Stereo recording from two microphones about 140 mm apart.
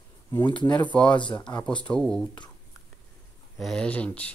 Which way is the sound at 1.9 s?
5° left (ahead or behind).